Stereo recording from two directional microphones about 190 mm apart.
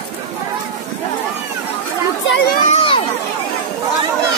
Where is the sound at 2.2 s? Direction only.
60° left (ahead or behind).